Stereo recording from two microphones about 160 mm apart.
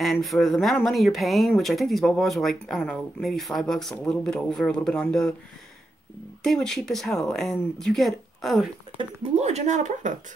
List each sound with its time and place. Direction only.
0.0 s speech: centre (ahead or behind)
6.4 s speech: 5° left (ahead or behind)
8.9 s speech: 45° right (ahead or behind)